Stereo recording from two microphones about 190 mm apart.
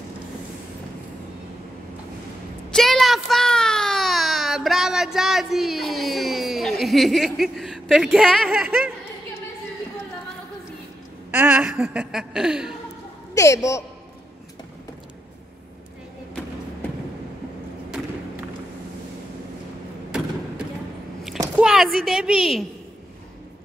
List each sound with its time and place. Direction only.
2.7 s a sound: centre (ahead or behind)
11.3 s speech: 10° right (ahead or behind)
13.3 s speech: 15° left (ahead or behind)
21.5 s a woman's voice: 5° right (ahead or behind)